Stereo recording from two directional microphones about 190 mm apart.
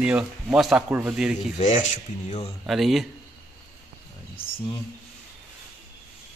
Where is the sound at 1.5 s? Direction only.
40° left (ahead or behind).